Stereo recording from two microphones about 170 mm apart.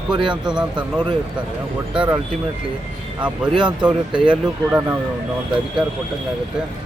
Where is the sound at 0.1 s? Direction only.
25° right (ahead or behind).